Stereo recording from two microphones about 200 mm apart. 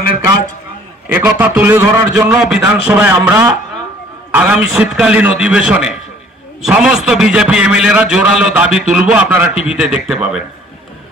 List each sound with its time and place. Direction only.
1.0 s a man's voice: 10° right (ahead or behind)